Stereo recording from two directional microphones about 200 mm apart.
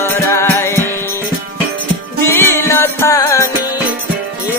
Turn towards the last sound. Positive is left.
turn(degrees=15)  # may be behind; listen again after turning